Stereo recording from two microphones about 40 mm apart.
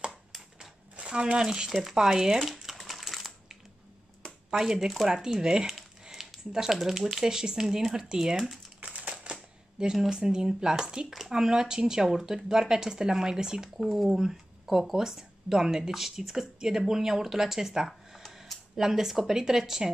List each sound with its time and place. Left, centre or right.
0.9 s speech: right
1.7 s speech: centre
2.4 s crumpling: centre
4.5 s speech: centre
6.2 s a sound: centre
6.5 s speech: centre
8.8 s crumpling: right
9.1 s a sound: centre
10.0 s speech: centre